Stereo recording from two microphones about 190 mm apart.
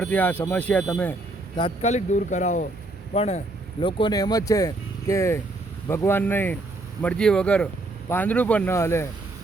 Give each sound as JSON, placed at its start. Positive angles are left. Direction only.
{"t": 0.0, "sound": "speech", "side_deg": 10}
{"t": 1.5, "sound": "speech", "side_deg": 30}